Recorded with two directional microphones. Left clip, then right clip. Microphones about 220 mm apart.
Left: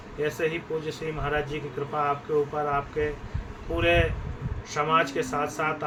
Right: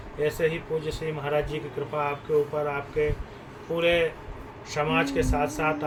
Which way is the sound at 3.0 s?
15° left (ahead or behind).